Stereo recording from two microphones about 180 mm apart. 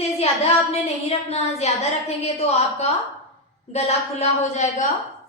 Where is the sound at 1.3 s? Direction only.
35° left (ahead or behind).